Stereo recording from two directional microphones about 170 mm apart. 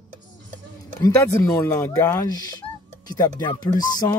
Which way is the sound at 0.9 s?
20° left (ahead or behind).